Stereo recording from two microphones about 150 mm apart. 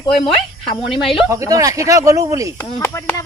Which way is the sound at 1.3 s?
20° right (ahead or behind).